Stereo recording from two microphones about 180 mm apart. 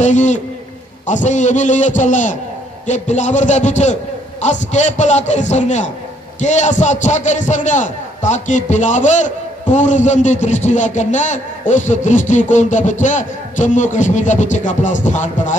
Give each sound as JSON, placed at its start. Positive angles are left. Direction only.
{"t": 0.0, "sound": "a man's voice", "side_deg": 40}